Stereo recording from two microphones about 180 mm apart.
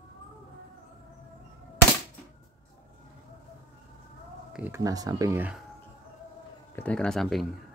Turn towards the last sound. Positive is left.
turn(degrees=0)  # may be behind; listen again after turning